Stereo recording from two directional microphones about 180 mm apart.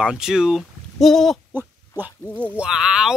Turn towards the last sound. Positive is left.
turn(degrees=-5)  # may be behind; listen again after turning